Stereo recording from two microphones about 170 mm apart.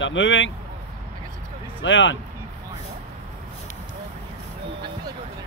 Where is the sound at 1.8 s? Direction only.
90° left.